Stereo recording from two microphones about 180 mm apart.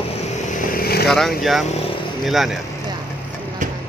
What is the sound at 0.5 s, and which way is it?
Vehicle, 55° left (ahead or behind).